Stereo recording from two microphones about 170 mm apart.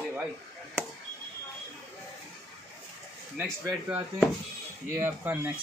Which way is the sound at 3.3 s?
10° right (ahead or behind).